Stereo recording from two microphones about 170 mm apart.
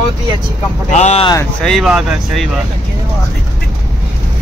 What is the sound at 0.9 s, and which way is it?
Speech, 40° left (ahead or behind).